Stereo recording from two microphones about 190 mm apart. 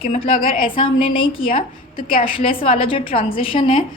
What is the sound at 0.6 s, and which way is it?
A woman's voice, 25° left (ahead or behind).